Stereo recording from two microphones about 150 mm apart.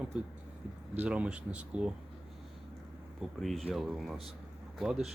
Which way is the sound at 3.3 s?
Centre (ahead or behind).